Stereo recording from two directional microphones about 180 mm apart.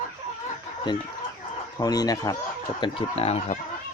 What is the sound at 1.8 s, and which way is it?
Speech, 20° left (ahead or behind).